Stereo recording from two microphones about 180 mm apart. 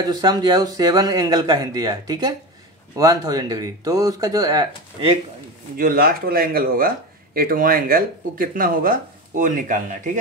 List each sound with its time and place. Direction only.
0.0 s speech: 20° right (ahead or behind)
5.8 s speech: 55° right (ahead or behind)